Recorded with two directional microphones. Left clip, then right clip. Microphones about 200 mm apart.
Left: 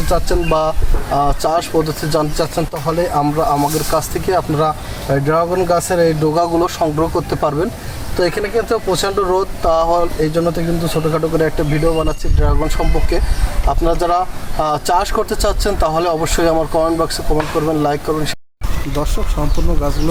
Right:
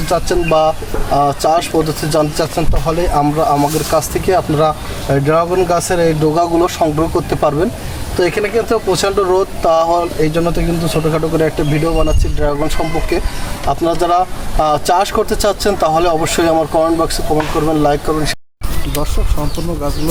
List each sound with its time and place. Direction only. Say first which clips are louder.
0.1 s speech: right 3 dB; 5° right (ahead or behind)